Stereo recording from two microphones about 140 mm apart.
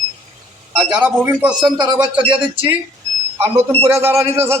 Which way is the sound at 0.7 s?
5° right (ahead or behind).